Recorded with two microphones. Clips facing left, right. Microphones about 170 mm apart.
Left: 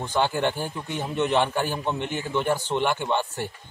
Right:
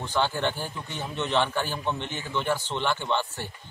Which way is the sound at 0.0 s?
15° left (ahead or behind).